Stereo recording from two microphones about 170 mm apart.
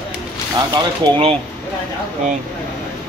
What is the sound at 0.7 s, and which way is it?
Speech, 35° right (ahead or behind).